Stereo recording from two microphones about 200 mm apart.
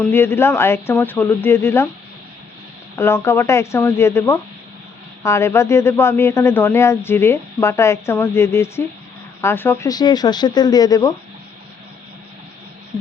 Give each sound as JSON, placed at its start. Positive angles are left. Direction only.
{"t": 0.0, "sound": "speech", "side_deg": 10}
{"t": 2.9, "sound": "speech", "side_deg": 15}